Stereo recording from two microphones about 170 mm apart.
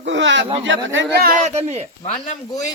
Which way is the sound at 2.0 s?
40° left (ahead or behind).